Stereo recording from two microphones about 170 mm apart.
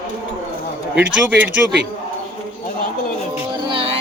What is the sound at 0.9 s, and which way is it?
Speech, 5° right (ahead or behind).